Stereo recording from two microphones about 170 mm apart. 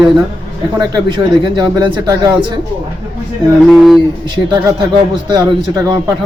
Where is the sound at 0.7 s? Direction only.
25° right (ahead or behind).